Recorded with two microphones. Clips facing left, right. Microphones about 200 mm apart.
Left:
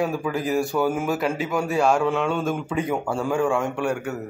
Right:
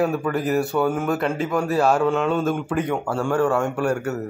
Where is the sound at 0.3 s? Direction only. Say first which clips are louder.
Right 2 dB; 5° right (ahead or behind).